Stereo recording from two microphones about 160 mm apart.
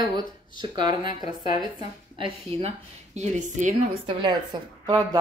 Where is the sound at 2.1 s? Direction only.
35° right (ahead or behind); by 3.7 s 50° right (ahead or behind).